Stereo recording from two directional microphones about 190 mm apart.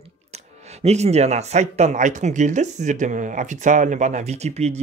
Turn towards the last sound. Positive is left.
turn(degrees=-35)  # may be behind; listen again after turning